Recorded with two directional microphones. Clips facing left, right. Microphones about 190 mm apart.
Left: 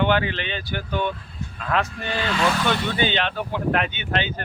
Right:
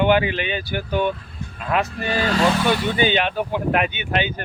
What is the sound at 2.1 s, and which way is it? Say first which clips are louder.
Speech: right 5 dB; 40° right (ahead or behind).